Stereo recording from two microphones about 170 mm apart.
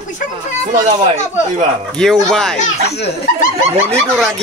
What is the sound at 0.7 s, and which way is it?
Speech, 45° right (ahead or behind).